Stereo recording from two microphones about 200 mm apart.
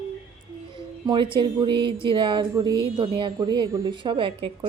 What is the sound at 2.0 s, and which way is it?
Speech, 25° right (ahead or behind).